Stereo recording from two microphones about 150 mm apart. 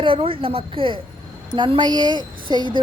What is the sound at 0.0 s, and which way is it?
Speech, 35° right (ahead or behind).